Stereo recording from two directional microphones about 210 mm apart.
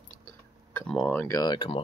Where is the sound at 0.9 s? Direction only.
5° left (ahead or behind).